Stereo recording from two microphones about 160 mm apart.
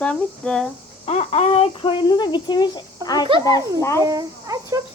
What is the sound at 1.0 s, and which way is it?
Speech, 40° left (ahead or behind).